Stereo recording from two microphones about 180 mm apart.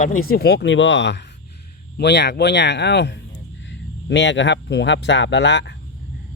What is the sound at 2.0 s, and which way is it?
Speech, 70° left (ahead or behind).